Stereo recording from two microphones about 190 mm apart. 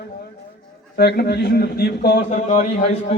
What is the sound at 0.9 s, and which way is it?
A man's voice, 55° left (ahead or behind).